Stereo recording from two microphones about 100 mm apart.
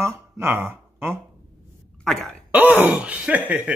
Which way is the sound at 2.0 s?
5° left (ahead or behind).